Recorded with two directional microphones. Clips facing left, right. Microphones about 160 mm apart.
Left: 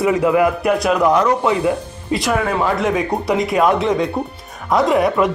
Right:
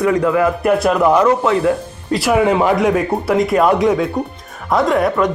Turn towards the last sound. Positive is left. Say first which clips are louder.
# even
turn(degrees=0)  # may be behind; listen again after turning